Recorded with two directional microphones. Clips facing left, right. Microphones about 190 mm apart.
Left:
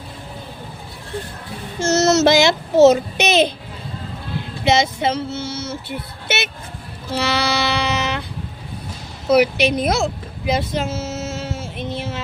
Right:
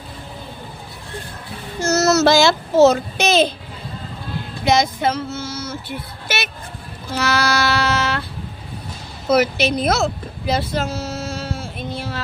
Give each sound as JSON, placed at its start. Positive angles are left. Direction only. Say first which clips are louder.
{"t": 1.8, "sound": "child singing", "louder": "left 1 dB", "side_deg": 20}
{"t": 4.6, "sound": "speech", "louder": "even", "side_deg": 25}
{"t": 5.0, "sound": "a sound", "louder": "even", "side_deg": 30}
{"t": 6.2, "sound": "speech", "louder": "left 2 dB", "side_deg": 25}
{"t": 7.1, "sound": "music", "louder": "right 1 dB", "side_deg": 30}
{"t": 9.3, "sound": "speech", "louder": "left 2 dB", "side_deg": 15}